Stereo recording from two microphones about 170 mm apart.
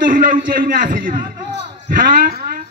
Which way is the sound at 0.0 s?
55° right (ahead or behind).